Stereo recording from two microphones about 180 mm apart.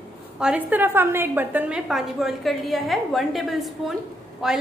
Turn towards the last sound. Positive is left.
turn(degrees=-5)  # may be behind; listen again after turning